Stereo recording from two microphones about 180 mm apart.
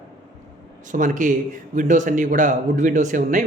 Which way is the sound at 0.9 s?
45° right (ahead or behind).